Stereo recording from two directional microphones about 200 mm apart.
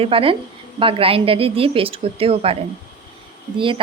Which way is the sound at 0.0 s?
25° right (ahead or behind).